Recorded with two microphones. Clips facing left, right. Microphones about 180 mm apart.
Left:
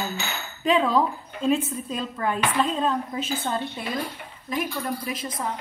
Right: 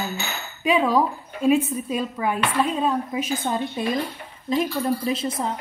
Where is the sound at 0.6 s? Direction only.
10° right (ahead or behind).